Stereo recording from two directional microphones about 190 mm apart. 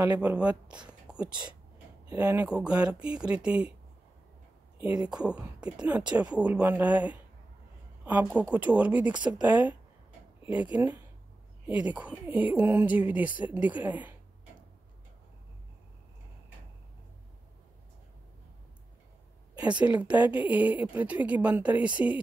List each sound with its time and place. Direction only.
0.0 s speech: 10° right (ahead or behind)
2.1 s speech: 20° right (ahead or behind)
2.4 s speech: 5° right (ahead or behind)
4.7 s speech: 10° right (ahead or behind)
19.6 s speech: 5° right (ahead or behind)